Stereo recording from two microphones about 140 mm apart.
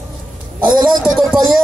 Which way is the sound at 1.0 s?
Centre (ahead or behind).